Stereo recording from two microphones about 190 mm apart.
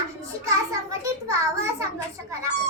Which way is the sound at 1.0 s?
15° right (ahead or behind).